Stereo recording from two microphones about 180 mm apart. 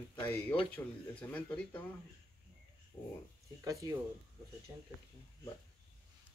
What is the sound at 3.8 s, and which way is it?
Speech, 25° right (ahead or behind).